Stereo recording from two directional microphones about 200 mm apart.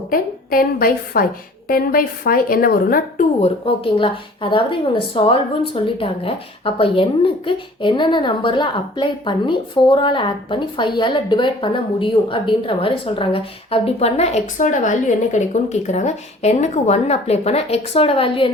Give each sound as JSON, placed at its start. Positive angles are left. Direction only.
{"t": 0.1, "sound": "a woman's voice", "side_deg": 45}
{"t": 3.4, "sound": "a woman's voice", "side_deg": 25}